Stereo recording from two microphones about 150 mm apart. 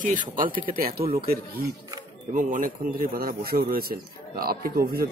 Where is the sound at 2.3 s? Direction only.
60° right (ahead or behind); by 4.6 s 90° right.